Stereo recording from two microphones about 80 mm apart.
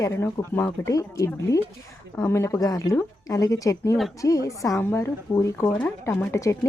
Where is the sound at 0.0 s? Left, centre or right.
Left.